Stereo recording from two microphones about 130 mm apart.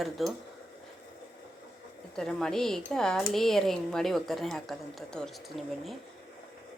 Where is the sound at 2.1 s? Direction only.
5° left (ahead or behind).